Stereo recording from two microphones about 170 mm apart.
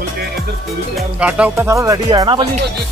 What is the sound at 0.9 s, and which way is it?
Speech, 5° right (ahead or behind).